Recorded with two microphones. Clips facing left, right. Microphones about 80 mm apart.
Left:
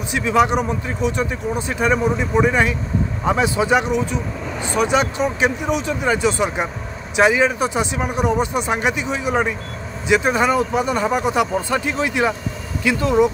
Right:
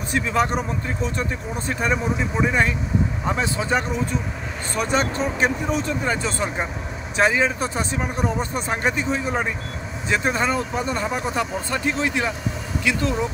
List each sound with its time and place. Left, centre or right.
0.1 s speech: centre